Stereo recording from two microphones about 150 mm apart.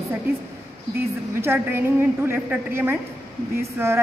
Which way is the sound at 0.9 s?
15° right (ahead or behind).